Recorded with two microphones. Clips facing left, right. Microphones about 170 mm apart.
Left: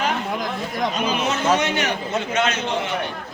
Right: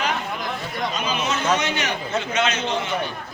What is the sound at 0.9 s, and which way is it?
Chatter, 55° left (ahead or behind).